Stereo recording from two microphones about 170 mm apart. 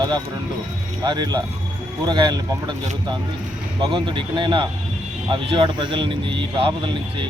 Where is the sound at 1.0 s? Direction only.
25° right (ahead or behind).